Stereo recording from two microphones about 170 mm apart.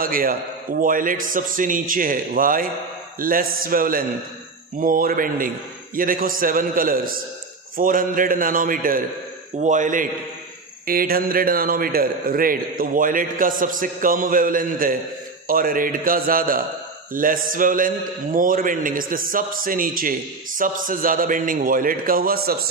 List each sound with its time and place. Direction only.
0.0 s a man's voice: 55° right (ahead or behind)
10.9 s a man's voice: 60° right (ahead or behind)